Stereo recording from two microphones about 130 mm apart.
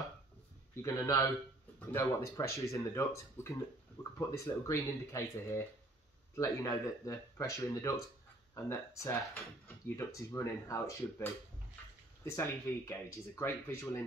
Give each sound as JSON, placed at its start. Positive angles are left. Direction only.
{"t": 0.8, "sound": "speech", "side_deg": 25}